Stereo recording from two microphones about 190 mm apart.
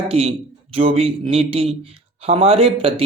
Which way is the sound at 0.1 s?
30° right (ahead or behind).